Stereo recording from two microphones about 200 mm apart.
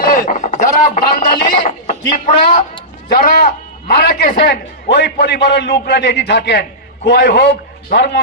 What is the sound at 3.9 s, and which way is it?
A man's voice, 55° left (ahead or behind).